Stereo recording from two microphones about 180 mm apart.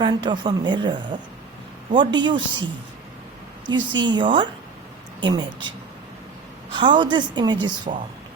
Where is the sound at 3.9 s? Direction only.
25° right (ahead or behind).